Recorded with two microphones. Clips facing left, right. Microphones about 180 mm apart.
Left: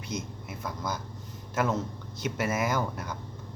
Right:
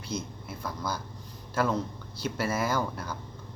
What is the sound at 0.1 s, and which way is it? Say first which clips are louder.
A man's voice: right 1 dB; 20° left (ahead or behind).